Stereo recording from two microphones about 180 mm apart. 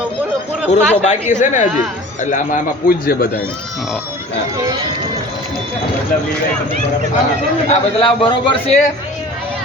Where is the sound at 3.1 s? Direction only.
55° left (ahead or behind).